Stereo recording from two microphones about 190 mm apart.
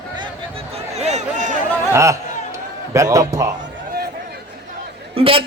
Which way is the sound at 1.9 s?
15° right (ahead or behind).